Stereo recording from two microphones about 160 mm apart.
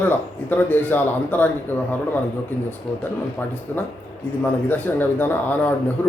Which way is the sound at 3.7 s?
10° left (ahead or behind).